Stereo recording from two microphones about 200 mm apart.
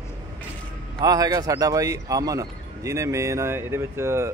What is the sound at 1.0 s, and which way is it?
Speech, 20° right (ahead or behind).